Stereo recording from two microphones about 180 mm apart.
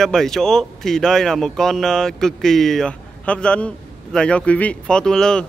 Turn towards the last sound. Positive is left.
turn(degrees=5)  # may be behind; listen again after turning